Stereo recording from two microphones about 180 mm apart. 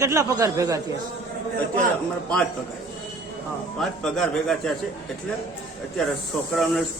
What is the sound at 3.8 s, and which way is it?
Speech, centre (ahead or behind).